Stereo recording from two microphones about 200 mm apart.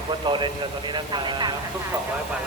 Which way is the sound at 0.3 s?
25° right (ahead or behind).